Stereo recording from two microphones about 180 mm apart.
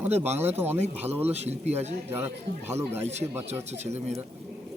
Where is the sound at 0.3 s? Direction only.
10° right (ahead or behind).